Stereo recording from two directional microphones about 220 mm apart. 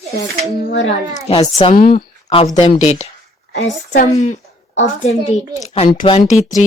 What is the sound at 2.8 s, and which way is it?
Speech, 30° left (ahead or behind).